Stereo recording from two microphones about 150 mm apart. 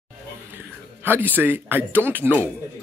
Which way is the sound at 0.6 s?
15° right (ahead or behind).